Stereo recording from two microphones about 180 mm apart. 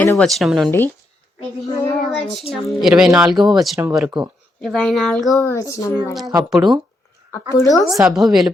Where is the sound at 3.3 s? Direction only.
25° right (ahead or behind).